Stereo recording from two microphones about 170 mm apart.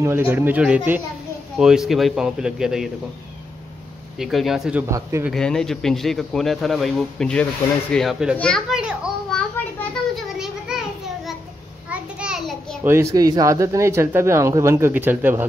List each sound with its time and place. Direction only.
0.0 s speech: 10° right (ahead or behind)
4.2 s speech: centre (ahead or behind)
4.8 s speech: 15° right (ahead or behind)
5.3 s a child's voice: 5° left (ahead or behind)
10.3 s a sound: 5° right (ahead or behind)
11.9 s a sound: 5° right (ahead or behind)
12.8 s speech: 15° right (ahead or behind)